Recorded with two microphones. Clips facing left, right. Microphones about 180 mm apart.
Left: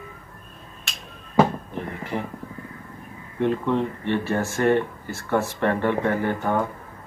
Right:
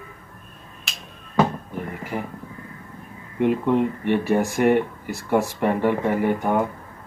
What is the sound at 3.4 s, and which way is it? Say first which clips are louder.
Speech: right 3 dB; 15° right (ahead or behind).